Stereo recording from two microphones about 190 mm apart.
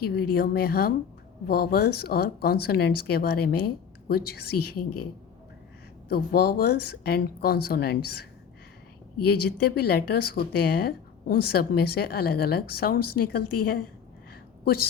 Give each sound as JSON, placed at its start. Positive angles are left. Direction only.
{"t": 0.0, "sound": "speech", "side_deg": 55}
{"t": 6.1, "sound": "speech", "side_deg": 55}
{"t": 9.2, "sound": "speech", "side_deg": 55}